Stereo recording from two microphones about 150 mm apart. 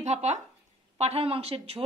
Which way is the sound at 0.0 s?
50° right (ahead or behind).